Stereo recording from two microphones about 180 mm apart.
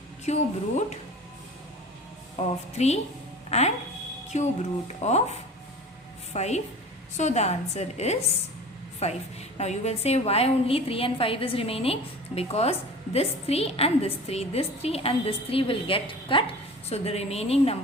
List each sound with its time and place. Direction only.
0.3 s a woman's voice: 40° left (ahead or behind)
2.7 s a woman's voice: 35° left (ahead or behind)
6.3 s a woman's voice: 40° left (ahead or behind)